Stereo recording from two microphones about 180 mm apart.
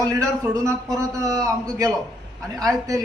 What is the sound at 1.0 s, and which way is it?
Speech, 20° right (ahead or behind).